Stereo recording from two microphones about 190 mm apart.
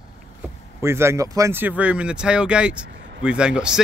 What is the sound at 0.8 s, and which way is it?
Speech, 15° right (ahead or behind).